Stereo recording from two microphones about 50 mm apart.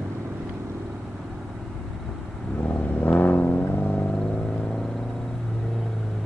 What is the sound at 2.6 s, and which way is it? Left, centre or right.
Vehicle, left.